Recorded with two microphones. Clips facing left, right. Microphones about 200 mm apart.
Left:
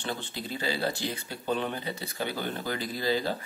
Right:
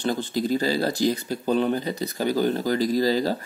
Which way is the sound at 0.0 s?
40° right (ahead or behind).